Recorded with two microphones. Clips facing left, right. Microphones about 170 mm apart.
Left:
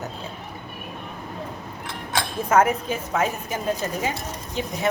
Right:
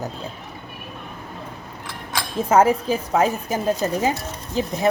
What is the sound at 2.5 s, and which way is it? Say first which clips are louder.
Speech: right 3 dB; 30° right (ahead or behind).